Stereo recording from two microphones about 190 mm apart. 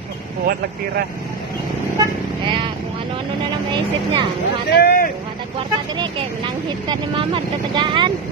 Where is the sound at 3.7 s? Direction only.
25° right (ahead or behind).